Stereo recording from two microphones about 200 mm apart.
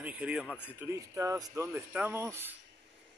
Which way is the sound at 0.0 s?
5° right (ahead or behind).